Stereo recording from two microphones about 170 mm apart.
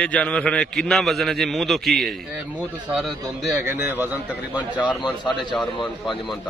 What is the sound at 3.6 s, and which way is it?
A man's voice, 10° right (ahead or behind).